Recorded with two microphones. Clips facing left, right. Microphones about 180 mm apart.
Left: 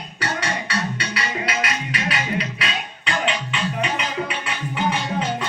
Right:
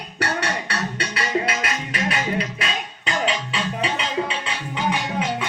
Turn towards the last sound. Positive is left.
turn(degrees=-30)  # may be behind; listen again after turning